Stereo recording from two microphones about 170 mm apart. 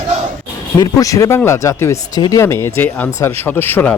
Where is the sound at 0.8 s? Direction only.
20° left (ahead or behind).